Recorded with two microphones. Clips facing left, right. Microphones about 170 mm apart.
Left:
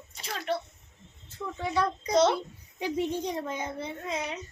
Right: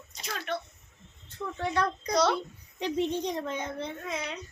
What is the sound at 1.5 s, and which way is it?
Speech, 5° left (ahead or behind).